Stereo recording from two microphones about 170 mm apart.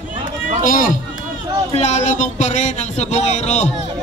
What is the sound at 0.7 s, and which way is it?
Speech, 50° left (ahead or behind).